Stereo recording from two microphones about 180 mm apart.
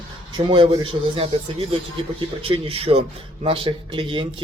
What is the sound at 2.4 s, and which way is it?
Speech, 30° right (ahead or behind).